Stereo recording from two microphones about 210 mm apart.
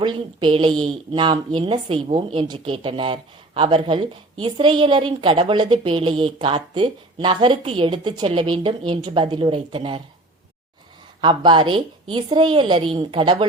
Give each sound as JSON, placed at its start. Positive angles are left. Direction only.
{"t": 0.0, "sound": "a woman's voice", "side_deg": -25}
{"t": 11.2, "sound": "a woman's voice", "side_deg": -20}